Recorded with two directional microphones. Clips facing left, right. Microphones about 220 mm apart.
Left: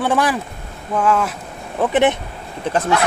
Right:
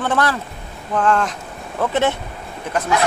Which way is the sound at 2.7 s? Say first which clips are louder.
Left 3 dB; 30° left (ahead or behind).